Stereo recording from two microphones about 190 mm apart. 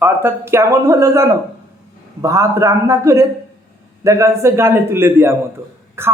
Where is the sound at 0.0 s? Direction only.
10° right (ahead or behind).